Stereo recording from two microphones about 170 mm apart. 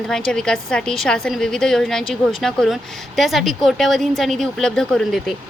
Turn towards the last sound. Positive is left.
turn(degrees=0)  # may be behind; listen again after turning